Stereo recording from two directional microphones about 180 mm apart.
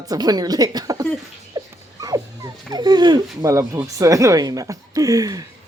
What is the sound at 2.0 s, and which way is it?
Speech, 20° right (ahead or behind).